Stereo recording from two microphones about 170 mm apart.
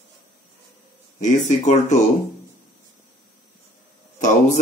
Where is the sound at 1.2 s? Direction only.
45° left (ahead or behind).